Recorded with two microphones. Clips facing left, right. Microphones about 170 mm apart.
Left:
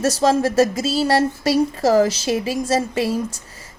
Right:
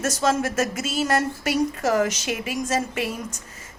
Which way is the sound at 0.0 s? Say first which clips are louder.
Left 5 dB; 35° left (ahead or behind).